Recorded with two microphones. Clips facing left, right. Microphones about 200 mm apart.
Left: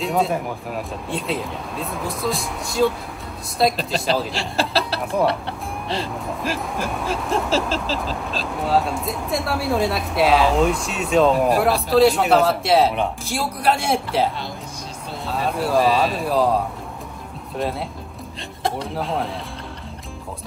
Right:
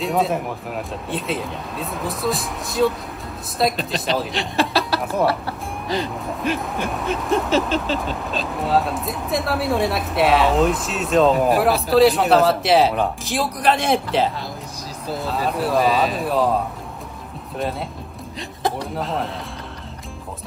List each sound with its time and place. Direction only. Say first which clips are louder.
0.0 s speech: even; centre (ahead or behind)
4.6 s speech: right 2 dB; 30° left (ahead or behind)
6.0 s speech: right 2 dB; centre (ahead or behind)
17.6 s speech: left 1 dB; centre (ahead or behind)